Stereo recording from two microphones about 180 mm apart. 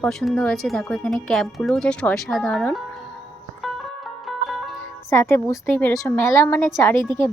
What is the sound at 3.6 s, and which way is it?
Music, centre (ahead or behind).